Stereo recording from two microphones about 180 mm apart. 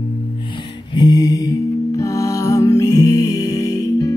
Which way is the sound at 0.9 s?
20° left (ahead or behind).